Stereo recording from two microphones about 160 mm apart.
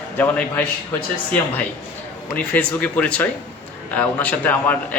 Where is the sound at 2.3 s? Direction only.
10° left (ahead or behind).